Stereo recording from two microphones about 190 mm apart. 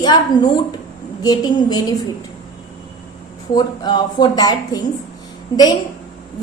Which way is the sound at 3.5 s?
20° left (ahead or behind).